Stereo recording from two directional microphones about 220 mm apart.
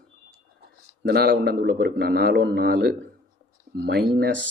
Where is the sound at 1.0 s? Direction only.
45° right (ahead or behind).